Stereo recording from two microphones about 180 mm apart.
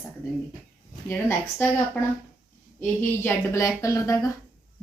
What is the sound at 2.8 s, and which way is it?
A woman's voice, 10° left (ahead or behind).